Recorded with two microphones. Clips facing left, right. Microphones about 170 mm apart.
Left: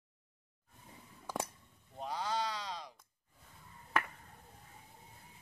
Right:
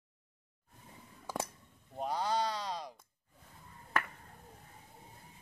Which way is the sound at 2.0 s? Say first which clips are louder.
Right 4 dB; 40° right (ahead or behind).